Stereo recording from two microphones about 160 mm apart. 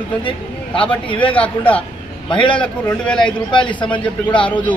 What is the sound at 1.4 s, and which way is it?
A man's voice, 10° left (ahead or behind).